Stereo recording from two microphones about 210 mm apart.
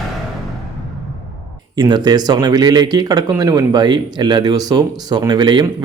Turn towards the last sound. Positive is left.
turn(degrees=-20)  # may be behind; listen again after turning